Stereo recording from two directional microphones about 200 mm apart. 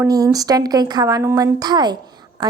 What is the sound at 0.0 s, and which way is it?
A woman's voice, 20° right (ahead or behind).